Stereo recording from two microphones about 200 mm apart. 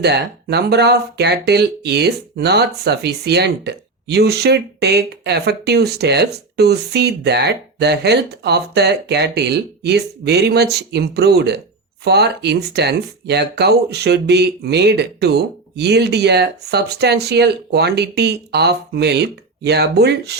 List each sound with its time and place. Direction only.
0.0 s speech: 55° right (ahead or behind)